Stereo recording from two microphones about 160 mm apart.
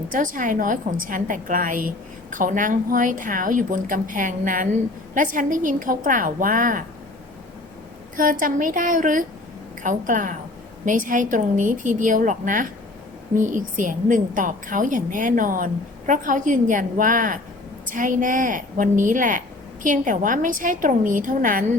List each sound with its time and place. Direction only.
0.1 s a woman's voice: 55° right (ahead or behind)
8.1 s a woman's voice: 60° right (ahead or behind)